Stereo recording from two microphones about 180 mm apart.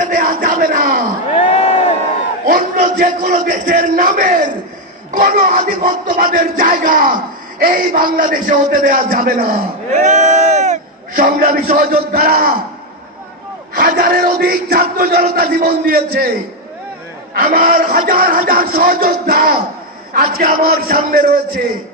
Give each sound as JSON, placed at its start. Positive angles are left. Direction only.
{"t": 0.1, "sound": "crowd", "side_deg": -45}
{"t": 1.5, "sound": "crowd", "side_deg": 35}
{"t": 2.4, "sound": "a man's voice", "side_deg": -50}
{"t": 13.7, "sound": "a sound", "side_deg": -55}
{"t": 17.3, "sound": "a man's voice", "side_deg": -50}